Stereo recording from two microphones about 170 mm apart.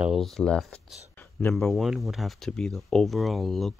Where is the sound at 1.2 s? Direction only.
10° left (ahead or behind).